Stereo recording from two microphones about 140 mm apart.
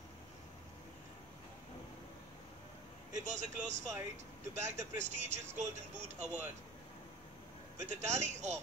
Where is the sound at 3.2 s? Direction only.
60° right (ahead or behind).